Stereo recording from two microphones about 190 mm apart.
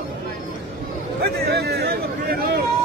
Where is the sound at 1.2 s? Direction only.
60° right (ahead or behind).